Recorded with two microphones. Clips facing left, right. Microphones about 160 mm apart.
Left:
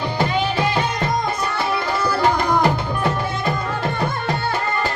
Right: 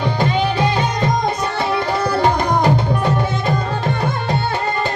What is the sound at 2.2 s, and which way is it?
Tabla, 20° right (ahead or behind).